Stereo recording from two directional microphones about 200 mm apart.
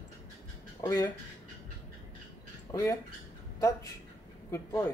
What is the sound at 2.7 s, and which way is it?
Speech, 15° left (ahead or behind).